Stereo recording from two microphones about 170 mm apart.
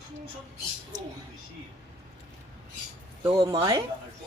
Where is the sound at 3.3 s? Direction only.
20° right (ahead or behind).